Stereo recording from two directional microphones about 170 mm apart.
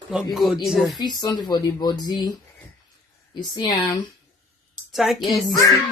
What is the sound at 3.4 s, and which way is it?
Speech, 25° left (ahead or behind).